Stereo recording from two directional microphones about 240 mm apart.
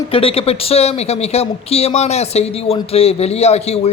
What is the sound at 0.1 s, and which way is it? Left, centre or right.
Speech, left.